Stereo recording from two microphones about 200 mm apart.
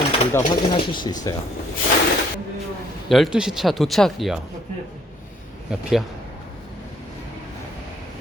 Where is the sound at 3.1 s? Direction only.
Centre (ahead or behind).